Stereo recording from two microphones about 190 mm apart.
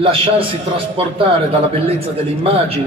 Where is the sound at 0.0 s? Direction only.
30° right (ahead or behind).